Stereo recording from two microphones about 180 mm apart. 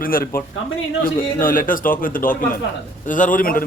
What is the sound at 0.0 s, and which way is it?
Speech, 55° left (ahead or behind).